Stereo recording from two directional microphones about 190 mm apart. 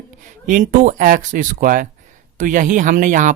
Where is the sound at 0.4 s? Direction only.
45° right (ahead or behind).